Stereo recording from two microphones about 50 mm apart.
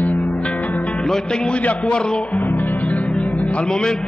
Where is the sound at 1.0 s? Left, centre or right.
Centre.